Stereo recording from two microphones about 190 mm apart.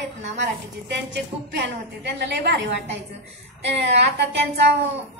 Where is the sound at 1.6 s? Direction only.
65° right (ahead or behind).